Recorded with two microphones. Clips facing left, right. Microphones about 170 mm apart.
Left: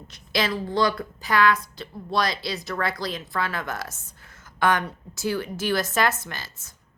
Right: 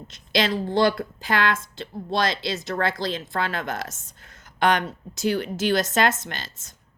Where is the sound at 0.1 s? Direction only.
20° right (ahead or behind).